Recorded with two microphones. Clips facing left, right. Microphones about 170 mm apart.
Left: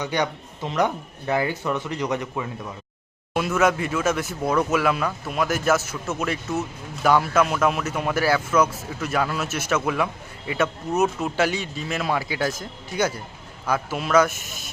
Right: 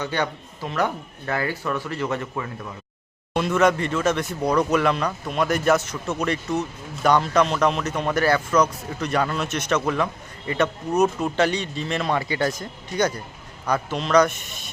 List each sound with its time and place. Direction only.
0.0 s speech: 15° left (ahead or behind)
3.3 s speech: 5° left (ahead or behind)